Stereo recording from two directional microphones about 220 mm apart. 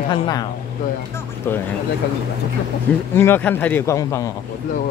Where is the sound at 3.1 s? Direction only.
10° left (ahead or behind).